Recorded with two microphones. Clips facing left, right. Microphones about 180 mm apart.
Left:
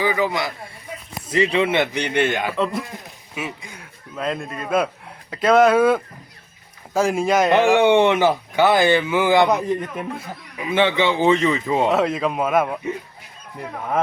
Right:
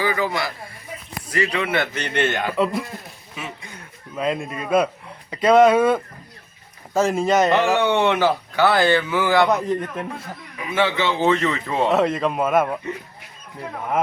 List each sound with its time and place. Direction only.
0.0 s speech: 15° left (ahead or behind)
4.1 s speech: centre (ahead or behind)
10.6 s speech: 20° left (ahead or behind)
11.9 s speech: centre (ahead or behind)